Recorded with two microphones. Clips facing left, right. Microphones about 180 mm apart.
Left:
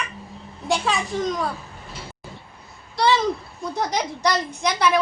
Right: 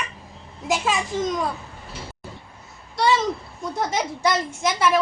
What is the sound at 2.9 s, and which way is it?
A child's voice, centre (ahead or behind).